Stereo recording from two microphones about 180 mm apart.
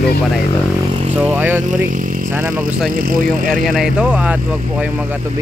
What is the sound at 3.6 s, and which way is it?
Speech, centre (ahead or behind).